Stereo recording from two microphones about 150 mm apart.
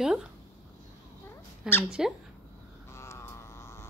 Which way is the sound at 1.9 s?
5° right (ahead or behind).